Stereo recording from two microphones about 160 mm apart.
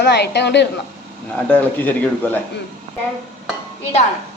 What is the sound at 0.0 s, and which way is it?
Speech, 90° left.